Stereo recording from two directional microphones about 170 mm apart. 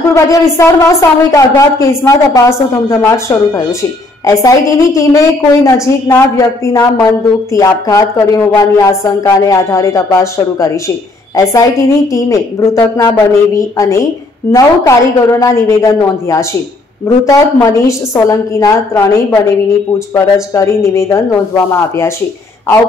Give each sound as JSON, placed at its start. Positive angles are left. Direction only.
{"t": 0.1, "sound": "a woman's voice", "side_deg": 20}